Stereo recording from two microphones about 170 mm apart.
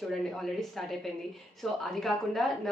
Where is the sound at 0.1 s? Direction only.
Centre (ahead or behind).